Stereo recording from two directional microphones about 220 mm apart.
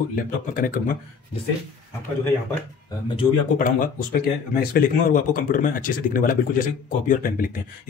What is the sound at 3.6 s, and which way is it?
Speech, 40° left (ahead or behind).